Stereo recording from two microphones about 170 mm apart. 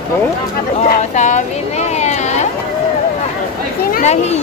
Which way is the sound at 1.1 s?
45° left (ahead or behind).